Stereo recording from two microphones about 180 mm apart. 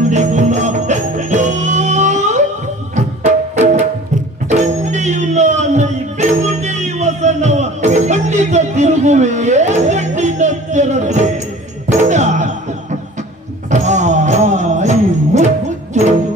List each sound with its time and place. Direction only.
0.1 s music: 40° right (ahead or behind)
13.7 s music: 40° right (ahead or behind)